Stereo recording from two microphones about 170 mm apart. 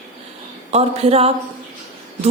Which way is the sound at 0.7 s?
35° right (ahead or behind).